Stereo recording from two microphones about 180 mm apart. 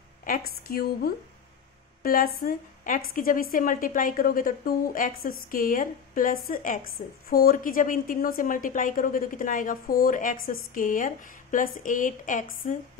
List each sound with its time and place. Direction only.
0.2 s a woman's voice: 55° left (ahead or behind)